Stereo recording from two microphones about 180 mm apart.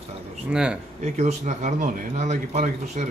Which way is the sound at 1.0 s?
40° right (ahead or behind).